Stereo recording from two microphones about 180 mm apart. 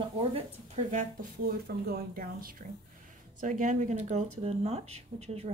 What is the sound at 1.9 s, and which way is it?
Speech, 50° right (ahead or behind).